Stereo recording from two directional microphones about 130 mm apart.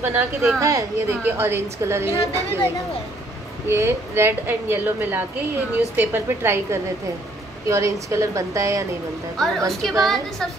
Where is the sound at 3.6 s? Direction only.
20° right (ahead or behind).